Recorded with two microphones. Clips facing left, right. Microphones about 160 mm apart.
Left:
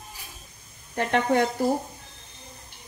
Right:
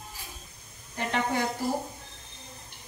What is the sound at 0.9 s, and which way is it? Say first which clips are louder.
Speech: left 6 dB; 65° left (ahead or behind).